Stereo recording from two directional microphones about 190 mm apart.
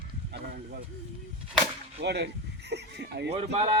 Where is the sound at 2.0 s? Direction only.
60° right (ahead or behind).